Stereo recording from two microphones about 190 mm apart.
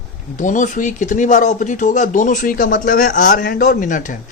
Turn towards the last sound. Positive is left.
turn(degrees=45)  # may be behind; listen again after turning